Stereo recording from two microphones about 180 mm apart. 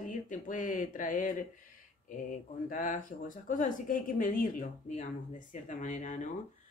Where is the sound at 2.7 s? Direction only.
50° left (ahead or behind).